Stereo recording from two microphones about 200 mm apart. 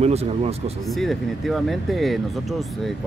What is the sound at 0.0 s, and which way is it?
Speech, 30° right (ahead or behind).